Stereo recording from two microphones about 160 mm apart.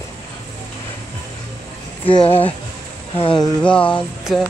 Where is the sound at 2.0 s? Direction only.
30° left (ahead or behind).